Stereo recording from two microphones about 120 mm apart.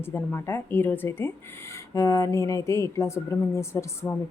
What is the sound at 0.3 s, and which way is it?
A woman's voice, 20° left (ahead or behind).